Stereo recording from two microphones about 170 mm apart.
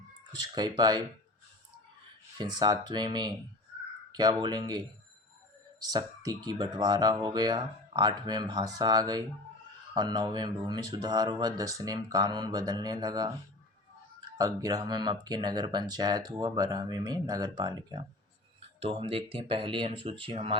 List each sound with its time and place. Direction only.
0.5 s speech: 25° right (ahead or behind)
2.4 s speech: 25° right (ahead or behind)
5.8 s speech: 25° right (ahead or behind)